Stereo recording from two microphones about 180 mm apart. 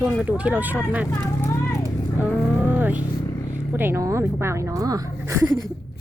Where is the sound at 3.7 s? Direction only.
10° right (ahead or behind).